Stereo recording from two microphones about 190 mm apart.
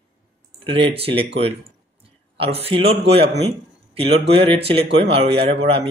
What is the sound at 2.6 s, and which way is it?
A man's voice, 30° right (ahead or behind).